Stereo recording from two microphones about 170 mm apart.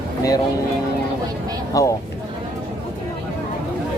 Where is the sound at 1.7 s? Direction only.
20° left (ahead or behind).